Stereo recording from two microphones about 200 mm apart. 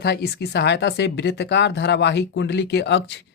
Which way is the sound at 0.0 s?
55° left (ahead or behind).